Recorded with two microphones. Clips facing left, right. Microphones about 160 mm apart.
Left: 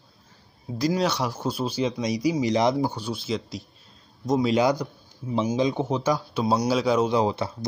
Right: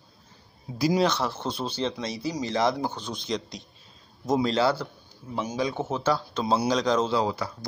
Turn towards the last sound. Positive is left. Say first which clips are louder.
# left 3 dB
turn(degrees=20)  # may be behind; listen again after turning